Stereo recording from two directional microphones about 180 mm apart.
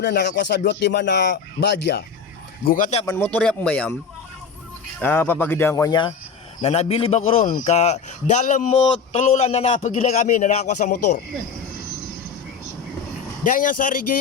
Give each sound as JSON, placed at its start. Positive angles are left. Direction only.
{"t": 0.0, "sound": "speech", "side_deg": 70}
{"t": 2.6, "sound": "speech", "side_deg": 50}
{"t": 3.1, "sound": "speech", "side_deg": 10}
{"t": 4.9, "sound": "speech", "side_deg": 10}
{"t": 6.6, "sound": "speech", "side_deg": 35}
{"t": 13.4, "sound": "speech", "side_deg": 50}